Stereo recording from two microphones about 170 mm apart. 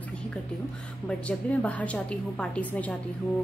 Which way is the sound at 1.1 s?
10° left (ahead or behind).